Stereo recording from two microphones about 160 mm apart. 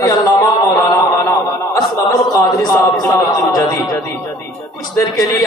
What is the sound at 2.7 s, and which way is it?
A man's voice, 25° left (ahead or behind).